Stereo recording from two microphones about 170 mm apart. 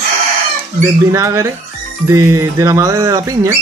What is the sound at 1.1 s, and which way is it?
Speech, 15° right (ahead or behind).